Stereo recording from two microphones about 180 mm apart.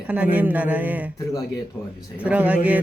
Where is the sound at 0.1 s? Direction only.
10° right (ahead or behind).